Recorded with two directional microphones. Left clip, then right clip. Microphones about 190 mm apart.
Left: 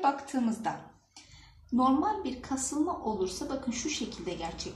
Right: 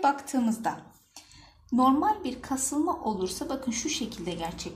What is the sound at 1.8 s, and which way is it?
A woman's voice, 50° right (ahead or behind).